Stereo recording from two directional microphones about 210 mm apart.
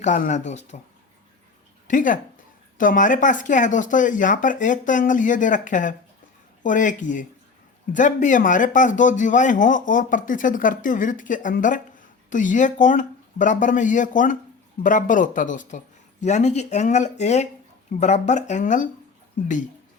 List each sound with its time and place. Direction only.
0.0 s speech: 35° left (ahead or behind)
1.9 s speech: 40° left (ahead or behind)